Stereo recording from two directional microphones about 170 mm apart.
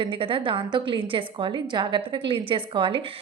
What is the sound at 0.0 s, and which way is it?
A woman's voice, 30° right (ahead or behind).